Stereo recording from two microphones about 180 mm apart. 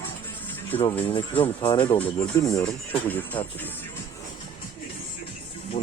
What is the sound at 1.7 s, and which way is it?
Music, 30° left (ahead or behind).